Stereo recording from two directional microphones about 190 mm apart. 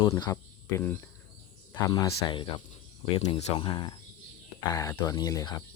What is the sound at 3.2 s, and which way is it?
Speech, 30° left (ahead or behind).